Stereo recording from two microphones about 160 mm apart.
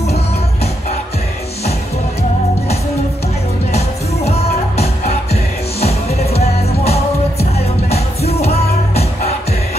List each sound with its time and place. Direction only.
3.7 s music: 40° left (ahead or behind)